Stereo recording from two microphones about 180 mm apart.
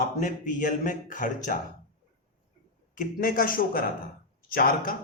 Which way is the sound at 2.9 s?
45° left (ahead or behind).